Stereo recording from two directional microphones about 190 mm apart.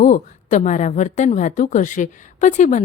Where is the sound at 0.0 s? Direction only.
40° left (ahead or behind).